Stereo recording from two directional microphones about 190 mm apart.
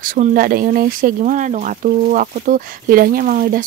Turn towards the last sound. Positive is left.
turn(degrees=-50)  # may be behind; listen again after turning